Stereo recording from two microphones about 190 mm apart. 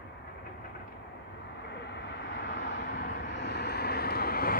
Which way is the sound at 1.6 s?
65° left (ahead or behind).